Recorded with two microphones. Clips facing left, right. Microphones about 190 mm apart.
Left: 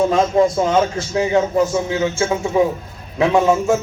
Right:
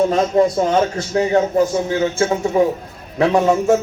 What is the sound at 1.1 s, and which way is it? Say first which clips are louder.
Speech: right 1 dB; 35° right (ahead or behind).